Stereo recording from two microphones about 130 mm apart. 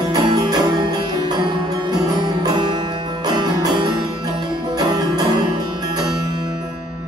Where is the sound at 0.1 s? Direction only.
30° right (ahead or behind).